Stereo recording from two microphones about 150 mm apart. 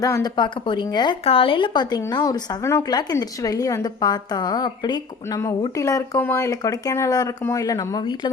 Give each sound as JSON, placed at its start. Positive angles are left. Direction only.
{"t": 0.0, "sound": "speech", "side_deg": 25}